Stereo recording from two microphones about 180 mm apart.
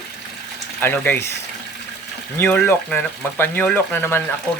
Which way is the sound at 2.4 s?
10° left (ahead or behind).